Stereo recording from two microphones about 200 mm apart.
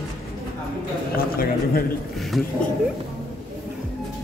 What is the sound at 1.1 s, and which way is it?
Speech, 45° left (ahead or behind).